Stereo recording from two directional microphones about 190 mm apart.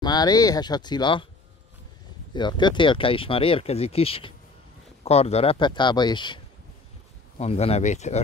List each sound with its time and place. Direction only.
0.0 s speech: 20° left (ahead or behind)
2.3 s speech: 25° left (ahead or behind)